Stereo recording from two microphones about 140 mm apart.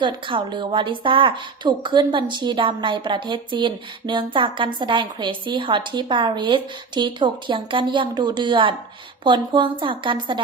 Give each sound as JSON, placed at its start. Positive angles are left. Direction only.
{"t": 0.0, "sound": "a woman's voice", "side_deg": -35}